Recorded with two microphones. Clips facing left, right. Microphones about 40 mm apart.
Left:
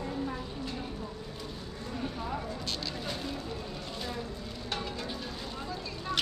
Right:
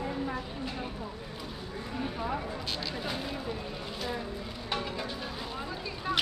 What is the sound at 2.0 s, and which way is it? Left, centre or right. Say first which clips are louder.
Clip-clop: right 3 dB; centre.